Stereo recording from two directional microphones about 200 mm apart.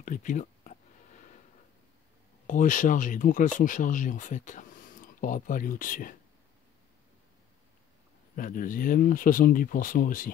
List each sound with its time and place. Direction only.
0.0 s a sound: 40° left (ahead or behind)
2.4 s speech: 40° left (ahead or behind)
8.4 s speech: 40° left (ahead or behind)